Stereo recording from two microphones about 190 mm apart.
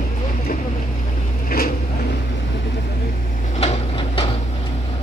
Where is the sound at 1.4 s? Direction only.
50° left (ahead or behind).